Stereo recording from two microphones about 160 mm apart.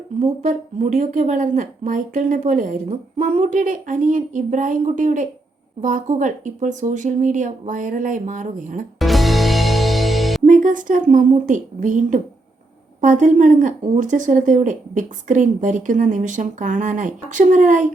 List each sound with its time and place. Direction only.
0.4 s a woman's voice: 45° right (ahead or behind)
9.0 s music: centre (ahead or behind)
10.4 s a woman's voice: 55° right (ahead or behind)